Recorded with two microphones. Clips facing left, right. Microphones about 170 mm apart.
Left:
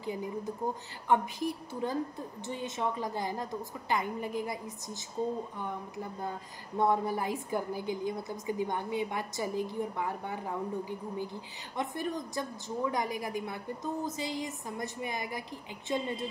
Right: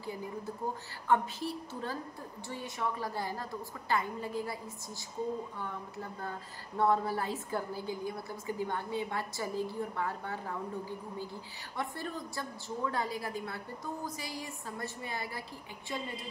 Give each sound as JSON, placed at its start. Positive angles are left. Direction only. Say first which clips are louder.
{"t": 1.0, "sound": "a woman's voice", "louder": "left 2 dB", "side_deg": 15}
{"t": 6.8, "sound": "a woman's voice", "louder": "left 1 dB", "side_deg": 15}